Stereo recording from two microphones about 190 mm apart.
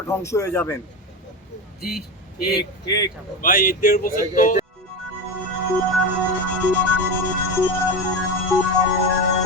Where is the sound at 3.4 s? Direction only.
45° left (ahead or behind).